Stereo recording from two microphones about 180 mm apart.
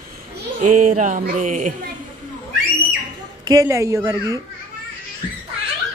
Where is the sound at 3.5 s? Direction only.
15° right (ahead or behind).